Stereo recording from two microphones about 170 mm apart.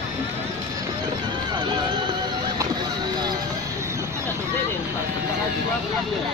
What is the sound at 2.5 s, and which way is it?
Vehicle, 25° right (ahead or behind).